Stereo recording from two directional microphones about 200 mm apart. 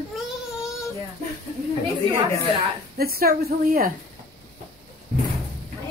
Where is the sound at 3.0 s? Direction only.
50° right (ahead or behind).